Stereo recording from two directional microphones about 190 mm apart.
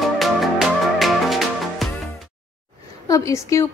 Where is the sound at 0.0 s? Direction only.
Centre (ahead or behind).